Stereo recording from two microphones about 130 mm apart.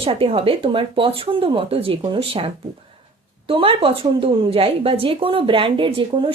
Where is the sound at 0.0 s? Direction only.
45° right (ahead or behind).